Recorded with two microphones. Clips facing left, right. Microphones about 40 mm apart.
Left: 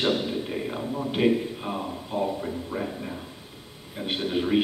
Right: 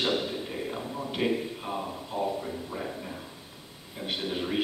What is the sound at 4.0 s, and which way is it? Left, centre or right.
Speech, centre.